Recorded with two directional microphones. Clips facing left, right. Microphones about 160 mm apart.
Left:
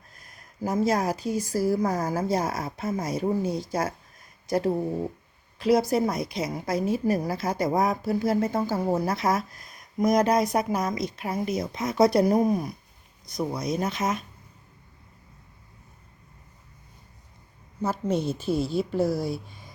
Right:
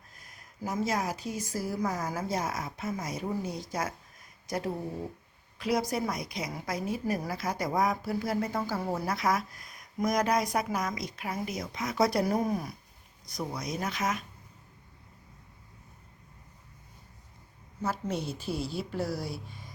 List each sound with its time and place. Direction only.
0.6 s a woman's voice: 35° left (ahead or behind)
17.8 s speech: 20° left (ahead or behind)